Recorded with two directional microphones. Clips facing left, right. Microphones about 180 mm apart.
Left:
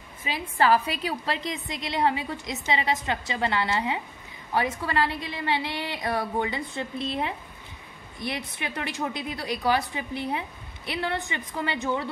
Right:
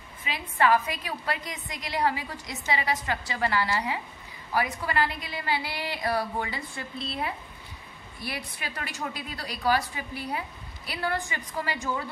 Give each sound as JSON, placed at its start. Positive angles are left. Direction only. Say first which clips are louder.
{"t": 0.3, "sound": "a woman's voice", "louder": "left 1 dB", "side_deg": 30}